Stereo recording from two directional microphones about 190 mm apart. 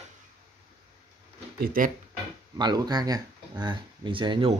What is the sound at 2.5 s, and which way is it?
Speech, 20° right (ahead or behind).